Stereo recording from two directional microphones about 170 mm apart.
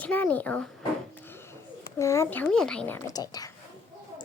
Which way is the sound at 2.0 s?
15° left (ahead or behind).